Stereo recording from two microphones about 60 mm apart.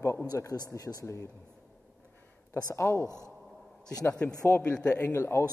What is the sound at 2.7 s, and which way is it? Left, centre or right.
Speech, left.